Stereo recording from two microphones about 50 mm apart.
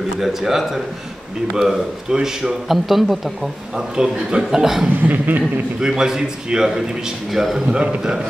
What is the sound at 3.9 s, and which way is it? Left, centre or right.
A man's voice, centre.